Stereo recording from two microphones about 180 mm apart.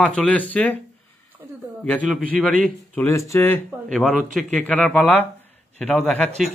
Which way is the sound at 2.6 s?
10° left (ahead or behind).